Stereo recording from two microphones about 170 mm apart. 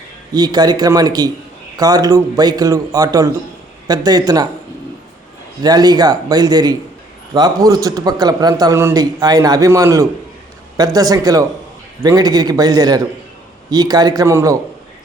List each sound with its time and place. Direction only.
0.3 s a man's voice: 25° right (ahead or behind)
5.6 s a man's voice: 25° right (ahead or behind)